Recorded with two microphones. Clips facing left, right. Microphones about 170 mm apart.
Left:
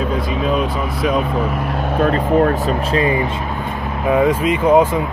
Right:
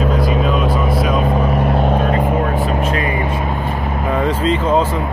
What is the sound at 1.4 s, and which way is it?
Vehicle, 35° right (ahead or behind).